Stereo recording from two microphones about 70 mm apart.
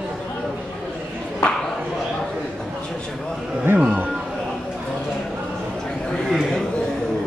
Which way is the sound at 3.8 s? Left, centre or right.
Centre.